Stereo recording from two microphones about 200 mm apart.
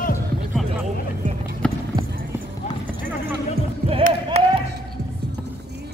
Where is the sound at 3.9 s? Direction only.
30° right (ahead or behind).